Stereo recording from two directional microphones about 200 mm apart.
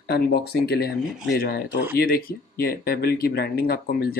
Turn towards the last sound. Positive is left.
turn(degrees=50)  # may be behind; listen again after turning